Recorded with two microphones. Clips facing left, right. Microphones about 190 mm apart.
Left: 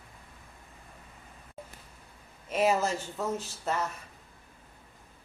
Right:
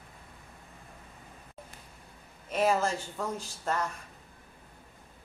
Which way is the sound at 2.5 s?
5° left (ahead or behind).